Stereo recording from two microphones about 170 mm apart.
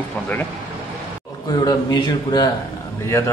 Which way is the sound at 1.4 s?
25° left (ahead or behind).